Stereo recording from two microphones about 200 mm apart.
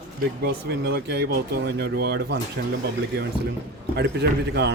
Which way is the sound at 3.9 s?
55° right (ahead or behind).